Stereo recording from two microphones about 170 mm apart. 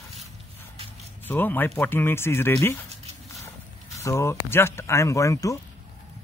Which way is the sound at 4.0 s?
15° left (ahead or behind).